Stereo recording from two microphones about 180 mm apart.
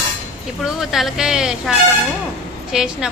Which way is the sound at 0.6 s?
Centre (ahead or behind).